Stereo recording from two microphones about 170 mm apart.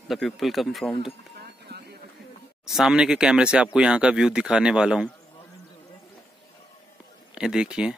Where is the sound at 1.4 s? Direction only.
70° right (ahead or behind).